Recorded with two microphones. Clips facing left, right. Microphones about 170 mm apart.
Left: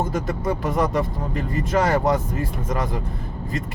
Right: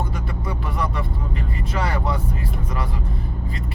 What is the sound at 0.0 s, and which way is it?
Speech, 45° left (ahead or behind).